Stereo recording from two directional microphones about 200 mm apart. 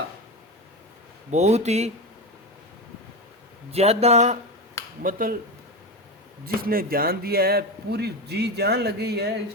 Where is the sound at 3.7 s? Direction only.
30° right (ahead or behind).